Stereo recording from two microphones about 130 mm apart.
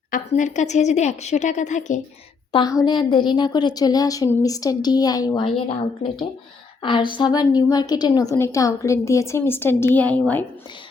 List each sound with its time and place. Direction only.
0.1 s a woman's voice: 70° left (ahead or behind)
2.6 s a woman's voice: 30° left (ahead or behind)
5.5 s a woman's voice: 45° left (ahead or behind); by 10.4 s 10° left (ahead or behind)